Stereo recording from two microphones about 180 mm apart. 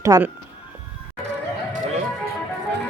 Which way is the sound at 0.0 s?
20° right (ahead or behind).